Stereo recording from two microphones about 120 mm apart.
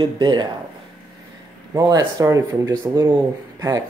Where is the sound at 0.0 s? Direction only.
40° right (ahead or behind).